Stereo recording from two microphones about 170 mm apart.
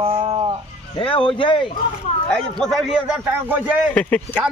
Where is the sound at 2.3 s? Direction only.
Centre (ahead or behind).